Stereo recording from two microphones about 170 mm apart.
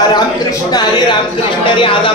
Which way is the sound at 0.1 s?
25° left (ahead or behind).